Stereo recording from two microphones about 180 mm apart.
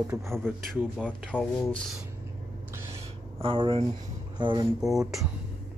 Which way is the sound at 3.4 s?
30° right (ahead or behind).